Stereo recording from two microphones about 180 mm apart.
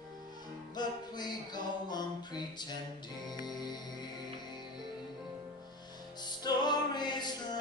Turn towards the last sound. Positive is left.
turn(degrees=25)  # may be behind; listen again after turning